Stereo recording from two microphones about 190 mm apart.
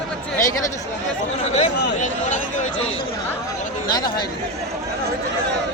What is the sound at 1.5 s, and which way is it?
Speech, 35° left (ahead or behind).